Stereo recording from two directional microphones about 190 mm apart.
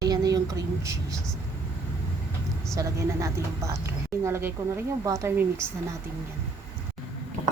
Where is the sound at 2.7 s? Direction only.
15° right (ahead or behind).